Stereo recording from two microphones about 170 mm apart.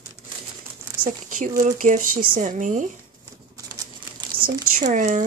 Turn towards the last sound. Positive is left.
turn(degrees=-45)  # may be behind; listen again after turning